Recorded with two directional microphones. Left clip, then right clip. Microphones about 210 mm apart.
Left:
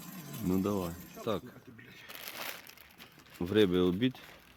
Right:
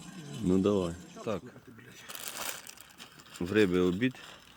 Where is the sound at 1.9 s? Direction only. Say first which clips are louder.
Right 3 dB; 40° right (ahead or behind).